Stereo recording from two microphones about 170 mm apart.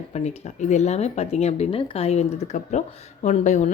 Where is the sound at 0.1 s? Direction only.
40° left (ahead or behind).